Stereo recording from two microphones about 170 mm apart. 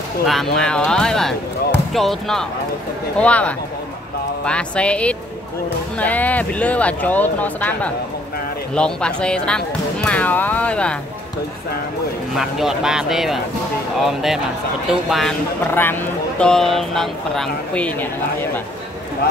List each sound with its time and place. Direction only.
0.3 s speech: 5° left (ahead or behind)
12.4 s speech: centre (ahead or behind)
15.6 s speech: 10° left (ahead or behind)